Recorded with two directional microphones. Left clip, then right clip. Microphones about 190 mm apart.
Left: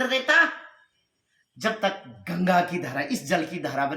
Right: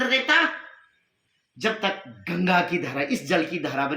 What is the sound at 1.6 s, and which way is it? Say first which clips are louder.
Speech: even; 25° left (ahead or behind).